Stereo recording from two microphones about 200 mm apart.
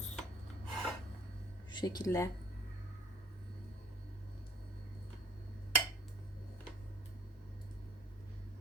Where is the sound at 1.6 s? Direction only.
20° left (ahead or behind).